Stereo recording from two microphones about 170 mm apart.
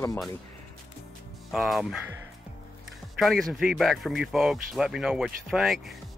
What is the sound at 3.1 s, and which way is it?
Speech, centre (ahead or behind).